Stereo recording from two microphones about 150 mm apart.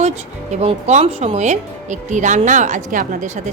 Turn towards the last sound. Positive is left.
turn(degrees=-60)  # may be behind; listen again after turning